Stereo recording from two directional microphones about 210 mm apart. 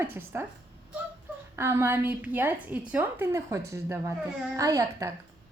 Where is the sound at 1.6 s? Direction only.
10° right (ahead or behind).